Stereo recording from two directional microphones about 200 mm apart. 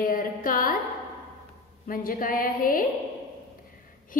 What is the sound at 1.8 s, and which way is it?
A woman's voice, 45° left (ahead or behind).